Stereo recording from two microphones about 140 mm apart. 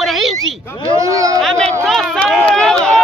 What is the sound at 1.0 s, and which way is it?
Speech, 25° right (ahead or behind).